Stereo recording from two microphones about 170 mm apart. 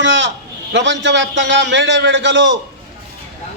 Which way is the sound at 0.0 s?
90° right.